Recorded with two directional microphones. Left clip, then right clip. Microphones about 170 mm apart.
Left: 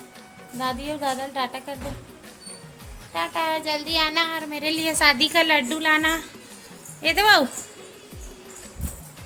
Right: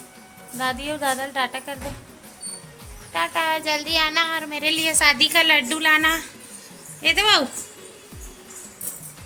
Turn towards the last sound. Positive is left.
turn(degrees=40)  # may be behind; listen again after turning